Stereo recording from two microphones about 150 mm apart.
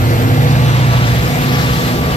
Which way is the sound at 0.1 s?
55° left (ahead or behind).